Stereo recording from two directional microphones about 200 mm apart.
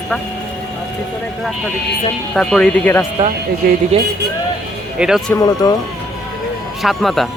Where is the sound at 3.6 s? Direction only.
50° right (ahead or behind).